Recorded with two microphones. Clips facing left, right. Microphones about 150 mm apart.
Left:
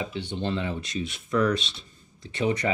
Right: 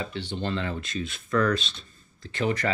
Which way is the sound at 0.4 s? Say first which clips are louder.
Left 1 dB; 20° left (ahead or behind).